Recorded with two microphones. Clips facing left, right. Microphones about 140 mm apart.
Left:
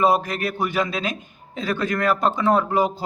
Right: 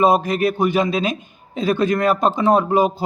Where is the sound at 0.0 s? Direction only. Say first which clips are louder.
Right 4 dB; 15° right (ahead or behind).